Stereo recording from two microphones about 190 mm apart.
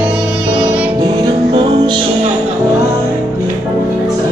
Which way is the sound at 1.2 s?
25° right (ahead or behind).